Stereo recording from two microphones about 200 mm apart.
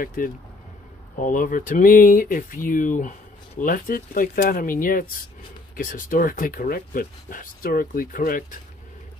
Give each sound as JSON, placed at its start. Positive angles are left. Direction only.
{"t": 0.0, "sound": "speech", "side_deg": 45}